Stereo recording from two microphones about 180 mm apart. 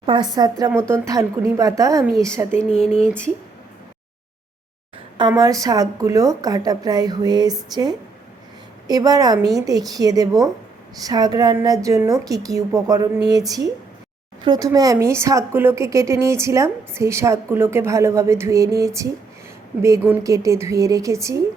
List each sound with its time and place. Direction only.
0.0 s a woman's voice: 25° right (ahead or behind)
2.6 s a sound: 5° left (ahead or behind)
5.3 s a woman's voice: 20° right (ahead or behind)
14.4 s speech: 20° right (ahead or behind)